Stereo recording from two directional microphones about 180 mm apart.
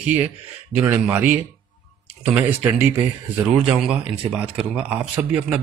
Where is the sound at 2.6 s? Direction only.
10° right (ahead or behind).